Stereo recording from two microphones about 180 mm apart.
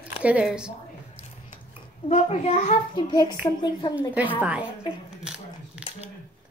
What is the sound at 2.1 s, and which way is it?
Speech, 40° left (ahead or behind).